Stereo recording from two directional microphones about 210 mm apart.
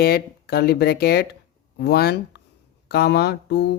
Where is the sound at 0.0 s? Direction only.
50° left (ahead or behind).